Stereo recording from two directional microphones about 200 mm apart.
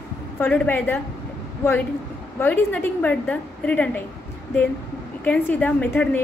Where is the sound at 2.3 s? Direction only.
10° left (ahead or behind).